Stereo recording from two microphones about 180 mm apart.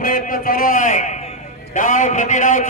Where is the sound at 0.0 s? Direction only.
45° left (ahead or behind).